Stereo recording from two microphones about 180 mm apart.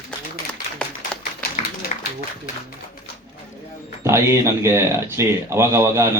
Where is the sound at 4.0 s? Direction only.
15° right (ahead or behind).